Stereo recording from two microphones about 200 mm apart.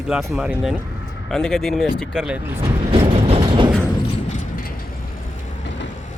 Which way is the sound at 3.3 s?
25° right (ahead or behind).